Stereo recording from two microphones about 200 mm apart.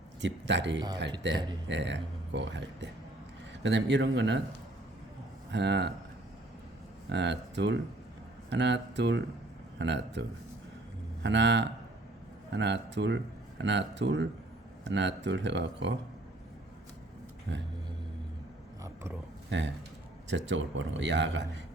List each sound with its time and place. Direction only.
0.2 s a man's voice: 65° right (ahead or behind)
5.5 s speech: 60° right (ahead or behind)
7.1 s a man's voice: 60° right (ahead or behind)
19.5 s a man's voice: 65° right (ahead or behind)